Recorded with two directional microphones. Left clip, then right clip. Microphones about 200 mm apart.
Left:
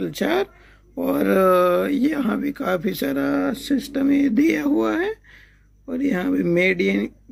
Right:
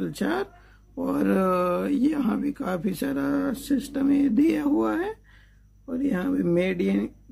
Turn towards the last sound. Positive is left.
turn(degrees=15)  # may be behind; listen again after turning